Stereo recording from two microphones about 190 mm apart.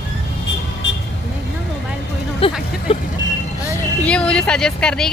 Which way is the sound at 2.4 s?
30° left (ahead or behind).